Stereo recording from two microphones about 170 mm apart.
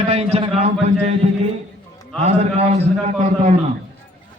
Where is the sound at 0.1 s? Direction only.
35° right (ahead or behind).